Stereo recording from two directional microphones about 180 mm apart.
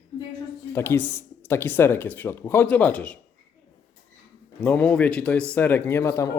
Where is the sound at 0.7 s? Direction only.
10° left (ahead or behind).